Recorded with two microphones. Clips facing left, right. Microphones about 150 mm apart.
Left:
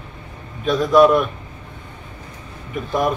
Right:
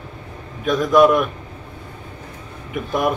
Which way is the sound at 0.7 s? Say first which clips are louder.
Left 1 dB; 5° right (ahead or behind).